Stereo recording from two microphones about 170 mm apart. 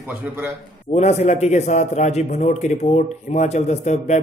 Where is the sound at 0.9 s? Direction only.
40° left (ahead or behind).